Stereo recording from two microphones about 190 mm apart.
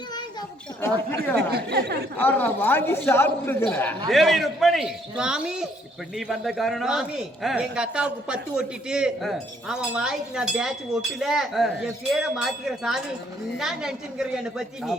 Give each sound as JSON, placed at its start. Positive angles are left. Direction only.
{"t": 0.8, "sound": "a man's voice", "side_deg": 10}
{"t": 1.4, "sound": "speech", "side_deg": -55}
{"t": 2.1, "sound": "a man's voice", "side_deg": 10}
{"t": 4.1, "sound": "a man's voice", "side_deg": 0}